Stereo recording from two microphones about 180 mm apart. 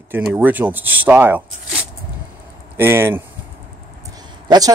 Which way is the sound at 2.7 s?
15° right (ahead or behind).